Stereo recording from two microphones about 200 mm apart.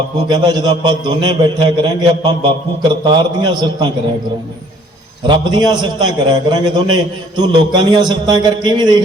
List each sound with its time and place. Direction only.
0.3 s a man's voice: 20° right (ahead or behind)
5.2 s a man's voice: 20° right (ahead or behind)